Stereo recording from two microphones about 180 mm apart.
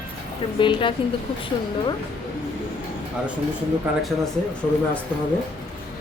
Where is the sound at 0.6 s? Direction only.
25° left (ahead or behind).